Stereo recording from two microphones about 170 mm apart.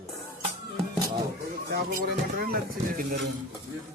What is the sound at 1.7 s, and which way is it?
Speech, 65° right (ahead or behind).